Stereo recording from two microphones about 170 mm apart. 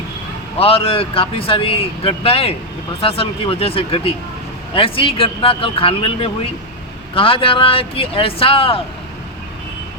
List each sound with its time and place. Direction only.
0.6 s a man's voice: 35° left (ahead or behind)